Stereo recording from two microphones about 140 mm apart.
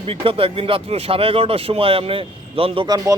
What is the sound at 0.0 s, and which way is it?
Speech, 40° right (ahead or behind).